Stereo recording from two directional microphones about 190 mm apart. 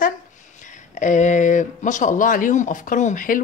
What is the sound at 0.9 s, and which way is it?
Speech, 40° left (ahead or behind).